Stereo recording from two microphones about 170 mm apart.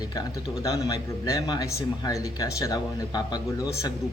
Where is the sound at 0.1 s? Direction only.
20° left (ahead or behind).